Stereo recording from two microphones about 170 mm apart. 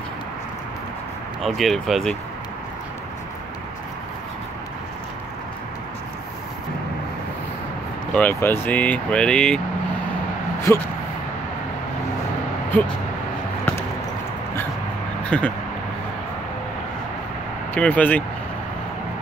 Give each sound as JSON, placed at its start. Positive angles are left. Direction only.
{"t": 1.4, "sound": "speech", "side_deg": 0}
{"t": 8.1, "sound": "speech", "side_deg": 10}
{"t": 10.7, "sound": "speech", "side_deg": 15}
{"t": 15.2, "sound": "speech", "side_deg": 5}
{"t": 17.7, "sound": "speech", "side_deg": 10}